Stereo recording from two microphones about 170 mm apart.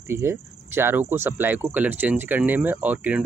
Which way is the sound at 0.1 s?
15° right (ahead or behind).